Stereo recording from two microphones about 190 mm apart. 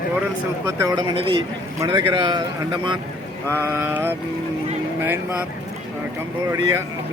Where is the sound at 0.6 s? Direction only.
20° right (ahead or behind).